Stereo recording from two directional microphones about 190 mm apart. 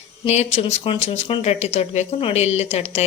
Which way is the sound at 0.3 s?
35° left (ahead or behind).